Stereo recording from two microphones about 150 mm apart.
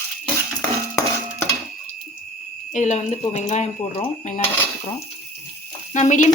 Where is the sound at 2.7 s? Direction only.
50° left (ahead or behind).